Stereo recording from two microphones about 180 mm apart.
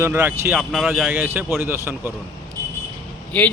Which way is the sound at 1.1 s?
10° right (ahead or behind).